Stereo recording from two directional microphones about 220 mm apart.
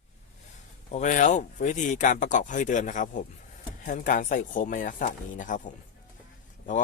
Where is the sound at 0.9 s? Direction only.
35° left (ahead or behind).